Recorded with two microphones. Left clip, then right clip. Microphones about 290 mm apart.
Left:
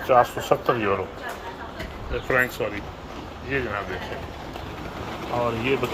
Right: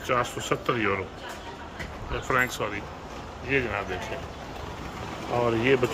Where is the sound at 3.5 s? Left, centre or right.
Centre.